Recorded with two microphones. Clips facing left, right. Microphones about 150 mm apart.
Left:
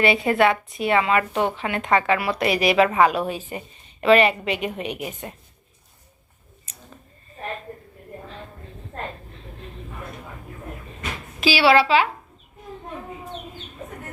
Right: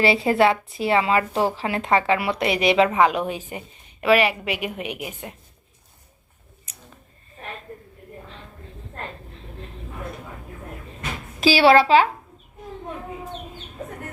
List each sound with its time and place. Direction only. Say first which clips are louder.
0.0 s speech: right 1 dB; 30° right (ahead or behind); by 5.3 s 10° right (ahead or behind)
11.3 s a woman's voice: right 2 dB; 40° right (ahead or behind)